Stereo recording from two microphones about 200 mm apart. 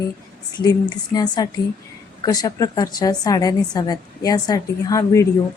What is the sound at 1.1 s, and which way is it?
Speech, 20° left (ahead or behind).